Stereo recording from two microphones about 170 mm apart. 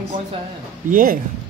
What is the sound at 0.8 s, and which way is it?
Speech, 50° right (ahead or behind).